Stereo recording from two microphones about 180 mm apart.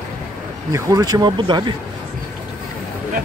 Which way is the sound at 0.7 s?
20° right (ahead or behind).